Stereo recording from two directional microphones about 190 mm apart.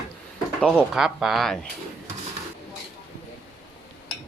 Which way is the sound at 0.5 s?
5° left (ahead or behind).